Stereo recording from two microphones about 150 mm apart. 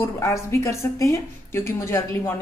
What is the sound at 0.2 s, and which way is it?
A woman's voice, 20° left (ahead or behind).